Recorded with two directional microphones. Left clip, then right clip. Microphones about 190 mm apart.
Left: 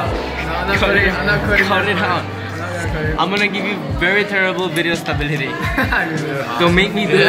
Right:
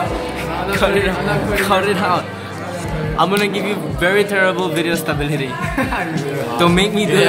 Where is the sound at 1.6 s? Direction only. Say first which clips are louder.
Right 1 dB; 15° right (ahead or behind).